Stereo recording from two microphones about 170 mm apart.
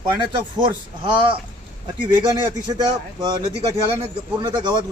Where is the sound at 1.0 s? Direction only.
30° right (ahead or behind).